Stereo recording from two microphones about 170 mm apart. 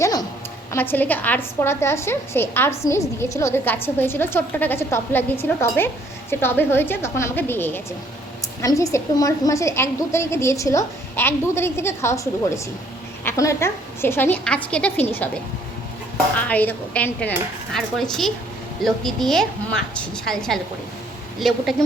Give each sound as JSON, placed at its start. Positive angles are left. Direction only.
{"t": 0.0, "sound": "a sound", "side_deg": 20}
{"t": 0.7, "sound": "a woman's voice", "side_deg": 10}
{"t": 16.3, "sound": "a woman's voice", "side_deg": 10}